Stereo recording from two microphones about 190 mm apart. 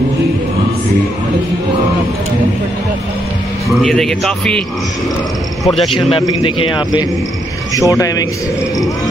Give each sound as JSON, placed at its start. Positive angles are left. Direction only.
{"t": 3.8, "sound": "a man's voice", "side_deg": 0}
{"t": 6.1, "sound": "speech", "side_deg": 25}